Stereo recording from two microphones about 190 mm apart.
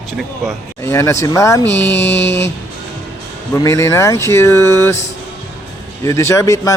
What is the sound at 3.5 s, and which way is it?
Speech, 15° left (ahead or behind).